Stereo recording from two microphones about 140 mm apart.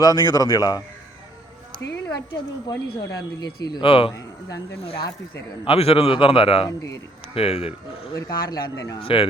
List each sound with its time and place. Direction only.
0.0 s speech: 30° left (ahead or behind)
2.3 s speech: 30° left (ahead or behind)
4.1 s speech: 25° left (ahead or behind)
5.6 s speech: 45° left (ahead or behind)
6.7 s speech: 25° left (ahead or behind)
7.3 s a man's voice: 45° left (ahead or behind)
8.1 s speech: 25° left (ahead or behind)
9.0 s speech: 40° left (ahead or behind)